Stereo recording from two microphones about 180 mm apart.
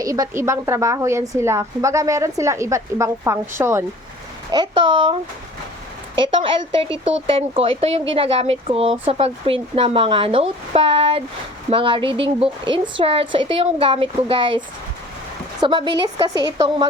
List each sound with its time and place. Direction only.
0.0 s a woman's voice: 20° right (ahead or behind)
4.5 s a woman's voice: 25° right (ahead or behind)
6.1 s a woman's voice: 25° right (ahead or behind)
15.6 s a woman's voice: 25° right (ahead or behind)